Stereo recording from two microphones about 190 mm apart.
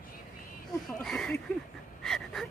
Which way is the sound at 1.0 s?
Centre (ahead or behind).